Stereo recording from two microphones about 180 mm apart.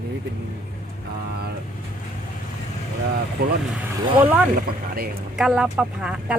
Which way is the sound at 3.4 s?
55° right (ahead or behind).